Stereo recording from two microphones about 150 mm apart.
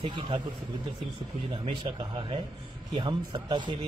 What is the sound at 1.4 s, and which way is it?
A man's voice, 35° right (ahead or behind).